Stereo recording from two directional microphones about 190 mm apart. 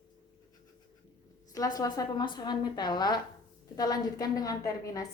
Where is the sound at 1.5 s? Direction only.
20° left (ahead or behind).